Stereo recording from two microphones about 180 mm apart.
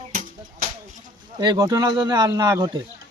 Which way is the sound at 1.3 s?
25° right (ahead or behind).